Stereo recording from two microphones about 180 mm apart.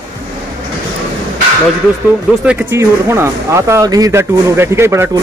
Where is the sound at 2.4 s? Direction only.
15° right (ahead or behind).